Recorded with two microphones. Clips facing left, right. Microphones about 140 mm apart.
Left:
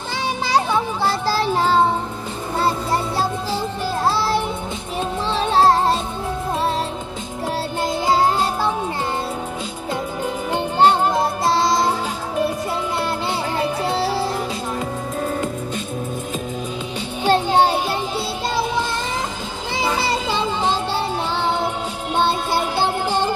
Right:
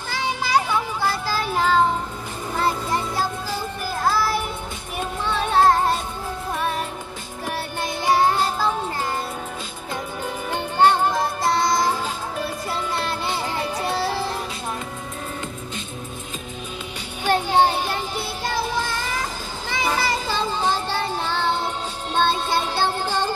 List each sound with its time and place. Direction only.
1.2 s child singing: 35° left (ahead or behind)
2.6 s music: 30° left (ahead or behind)
7.4 s music: 25° left (ahead or behind)
10.2 s music: 20° left (ahead or behind)
17.2 s music: 20° left (ahead or behind)